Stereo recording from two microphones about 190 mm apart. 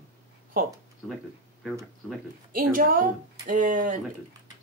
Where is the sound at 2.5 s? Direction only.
45° right (ahead or behind).